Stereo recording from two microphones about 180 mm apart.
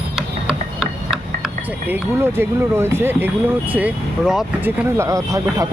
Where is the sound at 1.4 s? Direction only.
10° right (ahead or behind).